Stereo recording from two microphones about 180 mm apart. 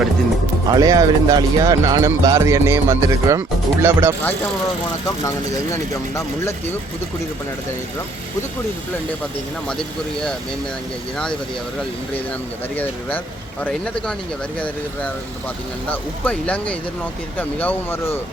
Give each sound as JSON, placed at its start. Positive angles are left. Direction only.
{"t": 0.7, "sound": "speech", "side_deg": -20}
{"t": 5.7, "sound": "speech", "side_deg": 15}
{"t": 12.7, "sound": "speech", "side_deg": 10}
{"t": 15.9, "sound": "speech", "side_deg": 5}